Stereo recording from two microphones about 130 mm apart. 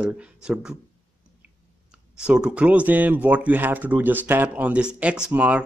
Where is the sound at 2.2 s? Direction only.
10° right (ahead or behind).